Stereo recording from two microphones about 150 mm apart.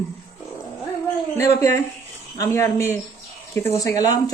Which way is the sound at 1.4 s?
20° left (ahead or behind).